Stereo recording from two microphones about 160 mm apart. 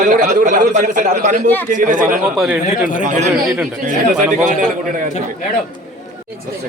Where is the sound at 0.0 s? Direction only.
55° right (ahead or behind).